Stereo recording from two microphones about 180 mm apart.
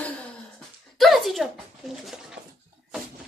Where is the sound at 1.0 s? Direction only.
Centre (ahead or behind).